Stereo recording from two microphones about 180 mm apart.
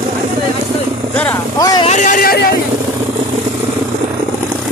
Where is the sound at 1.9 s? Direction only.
45° left (ahead or behind).